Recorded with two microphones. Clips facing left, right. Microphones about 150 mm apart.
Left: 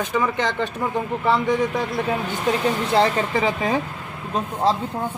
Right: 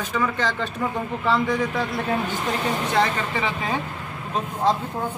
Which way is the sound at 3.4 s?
40° left (ahead or behind).